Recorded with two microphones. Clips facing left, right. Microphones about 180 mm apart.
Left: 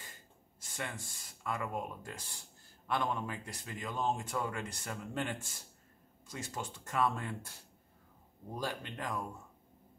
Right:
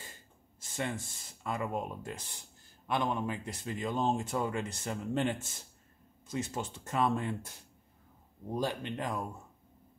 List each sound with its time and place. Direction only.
0.6 s speech: 25° right (ahead or behind)
8.5 s speech: 20° right (ahead or behind)